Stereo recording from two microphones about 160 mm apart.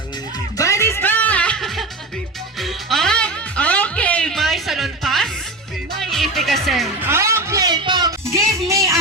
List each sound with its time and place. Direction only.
0.5 s music: 20° left (ahead or behind); by 6.9 s centre (ahead or behind)
7.0 s music: 15° right (ahead or behind)